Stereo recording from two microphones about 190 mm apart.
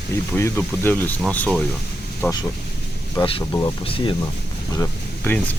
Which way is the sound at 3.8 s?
25° left (ahead or behind).